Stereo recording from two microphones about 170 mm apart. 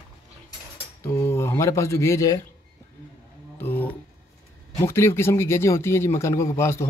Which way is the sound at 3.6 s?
10° left (ahead or behind).